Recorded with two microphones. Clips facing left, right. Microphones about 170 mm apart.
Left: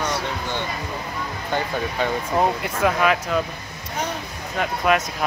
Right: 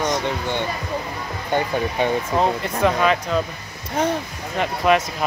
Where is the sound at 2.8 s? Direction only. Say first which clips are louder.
Right 1 dB; 5° left (ahead or behind).